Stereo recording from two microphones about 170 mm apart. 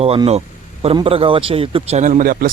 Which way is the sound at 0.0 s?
35° right (ahead or behind).